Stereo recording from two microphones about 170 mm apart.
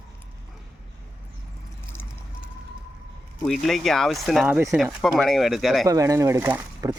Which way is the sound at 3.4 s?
5° left (ahead or behind).